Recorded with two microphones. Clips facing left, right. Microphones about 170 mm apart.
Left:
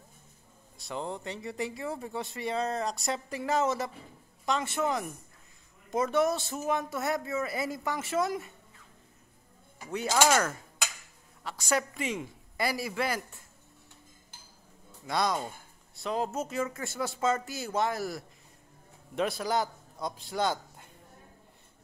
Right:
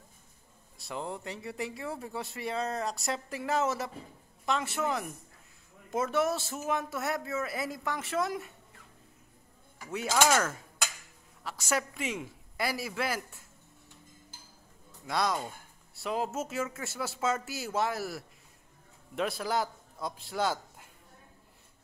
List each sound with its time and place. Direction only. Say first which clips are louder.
0.7 s speech: left 1 dB; 5° right (ahead or behind)
9.8 s speech: left 2 dB; 5° right (ahead or behind)
11.4 s speech: left 2 dB; 5° right (ahead or behind)
15.0 s a man's voice: left 1 dB; centre (ahead or behind)